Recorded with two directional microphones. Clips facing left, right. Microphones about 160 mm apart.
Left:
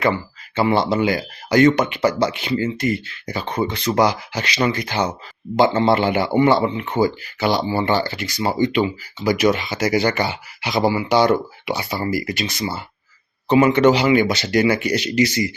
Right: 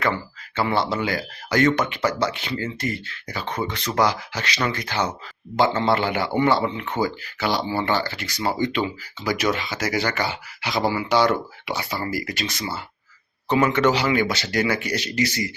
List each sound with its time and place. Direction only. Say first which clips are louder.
0.5 s speech: left 5 dB; 15° left (ahead or behind)